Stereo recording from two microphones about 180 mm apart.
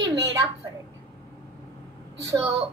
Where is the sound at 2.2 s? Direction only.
15° right (ahead or behind).